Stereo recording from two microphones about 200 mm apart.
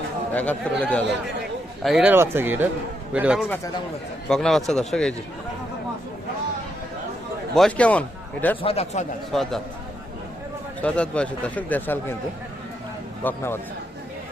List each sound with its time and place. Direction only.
0.3 s a man's voice: 5° left (ahead or behind)
7.5 s speech: 5° left (ahead or behind)
8.6 s speech: 30° left (ahead or behind)
9.3 s a man's voice: centre (ahead or behind)
10.8 s speech: 5° left (ahead or behind)
13.2 s speech: 10° left (ahead or behind)